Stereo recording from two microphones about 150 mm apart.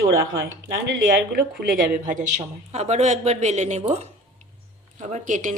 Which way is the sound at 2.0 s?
60° right (ahead or behind).